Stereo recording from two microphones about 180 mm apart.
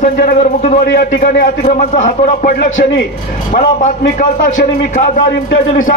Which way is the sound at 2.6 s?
75° left (ahead or behind).